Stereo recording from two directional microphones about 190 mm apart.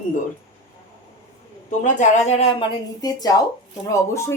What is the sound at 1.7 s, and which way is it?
Speech, 40° left (ahead or behind).